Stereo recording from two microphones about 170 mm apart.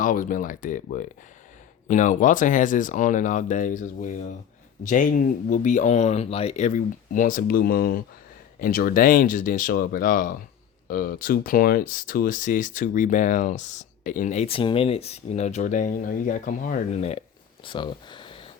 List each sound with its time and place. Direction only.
0.0 s speech: 50° left (ahead or behind); by 18.3 s 25° left (ahead or behind)